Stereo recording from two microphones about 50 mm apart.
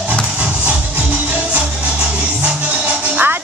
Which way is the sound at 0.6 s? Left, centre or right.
Right.